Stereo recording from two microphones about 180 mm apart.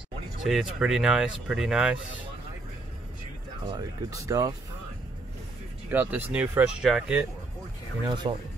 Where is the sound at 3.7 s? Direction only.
20° right (ahead or behind).